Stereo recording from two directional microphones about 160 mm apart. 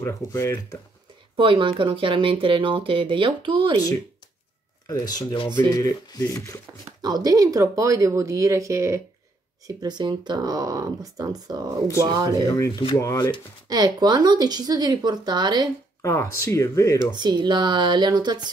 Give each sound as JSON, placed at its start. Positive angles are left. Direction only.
{"t": 0.0, "sound": "speech", "side_deg": 15}
{"t": 1.3, "sound": "speech", "side_deg": -35}
{"t": 4.8, "sound": "speech", "side_deg": 30}
{"t": 7.0, "sound": "speech", "side_deg": -25}
{"t": 12.4, "sound": "speech", "side_deg": 20}
{"t": 13.7, "sound": "speech", "side_deg": -25}
{"t": 16.0, "sound": "speech", "side_deg": 20}
{"t": 17.1, "sound": "speech", "side_deg": -25}